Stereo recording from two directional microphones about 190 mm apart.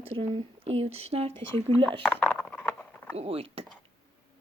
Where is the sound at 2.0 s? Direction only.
5° left (ahead or behind).